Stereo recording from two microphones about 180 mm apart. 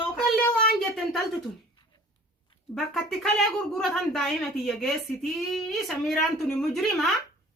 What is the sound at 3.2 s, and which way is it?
A woman's voice, centre (ahead or behind).